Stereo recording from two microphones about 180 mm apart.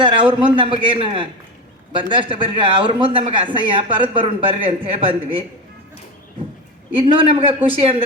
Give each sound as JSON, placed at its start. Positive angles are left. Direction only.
{"t": 0.0, "sound": "speech", "side_deg": -30}
{"t": 6.9, "sound": "a man's voice", "side_deg": -30}